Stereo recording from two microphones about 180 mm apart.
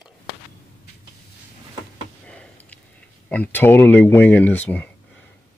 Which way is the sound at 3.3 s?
10° left (ahead or behind).